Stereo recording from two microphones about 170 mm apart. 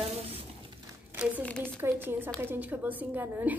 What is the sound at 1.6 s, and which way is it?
A woman's voice, 10° right (ahead or behind).